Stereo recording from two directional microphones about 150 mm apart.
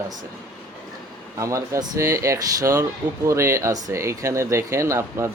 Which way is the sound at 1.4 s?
20° right (ahead or behind).